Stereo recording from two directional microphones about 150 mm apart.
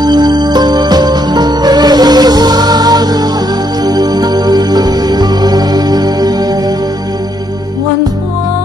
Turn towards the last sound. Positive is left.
turn(degrees=-25)  # may be behind; listen again after turning